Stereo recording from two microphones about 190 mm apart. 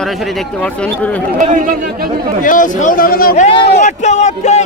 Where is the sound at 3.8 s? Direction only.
40° left (ahead or behind).